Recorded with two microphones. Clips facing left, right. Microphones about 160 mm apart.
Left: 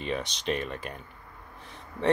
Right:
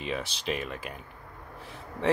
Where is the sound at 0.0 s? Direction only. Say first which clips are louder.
Left 2 dB; centre (ahead or behind).